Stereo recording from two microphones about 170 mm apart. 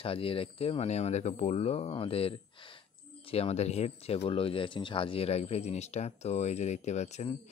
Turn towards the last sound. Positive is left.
turn(degrees=40)  # may be behind; listen again after turning